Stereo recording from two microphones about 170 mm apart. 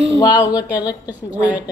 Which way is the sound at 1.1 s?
10° right (ahead or behind).